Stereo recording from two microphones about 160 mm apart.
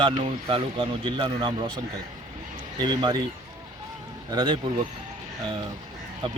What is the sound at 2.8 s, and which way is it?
Speech, 30° right (ahead or behind).